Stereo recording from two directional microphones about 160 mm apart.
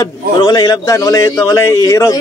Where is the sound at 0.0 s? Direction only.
25° left (ahead or behind).